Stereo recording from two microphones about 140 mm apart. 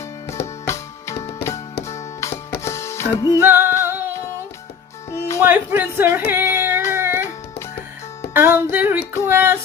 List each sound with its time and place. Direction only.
0.3 s music: 20° left (ahead or behind)
3.4 s music: 15° right (ahead or behind)
5.4 s speech: 15° right (ahead or behind)
6.3 s child singing: 15° right (ahead or behind)
6.9 s music: 15° right (ahead or behind)
8.3 s speech: 15° right (ahead or behind)